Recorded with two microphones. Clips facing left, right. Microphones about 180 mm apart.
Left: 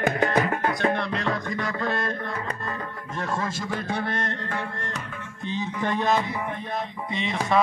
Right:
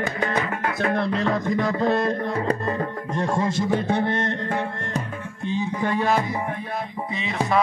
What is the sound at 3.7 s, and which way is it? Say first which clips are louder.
Music: right 6 dB; 25° right (ahead or behind).